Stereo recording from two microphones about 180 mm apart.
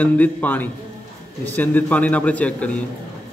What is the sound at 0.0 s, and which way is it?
A man's voice, 10° left (ahead or behind).